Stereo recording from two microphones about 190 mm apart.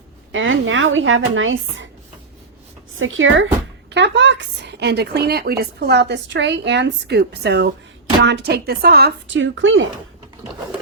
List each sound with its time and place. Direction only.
0.3 s a woman's voice: 90° right
3.0 s a woman's voice: 90° right
3.9 s a woman's voice: 70° right (ahead or behind); by 9.9 s 90° right